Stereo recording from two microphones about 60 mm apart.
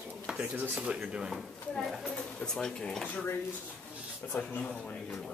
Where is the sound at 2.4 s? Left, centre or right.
Centre.